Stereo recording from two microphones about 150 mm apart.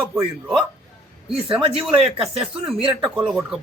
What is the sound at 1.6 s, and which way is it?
Speech, 40° right (ahead or behind).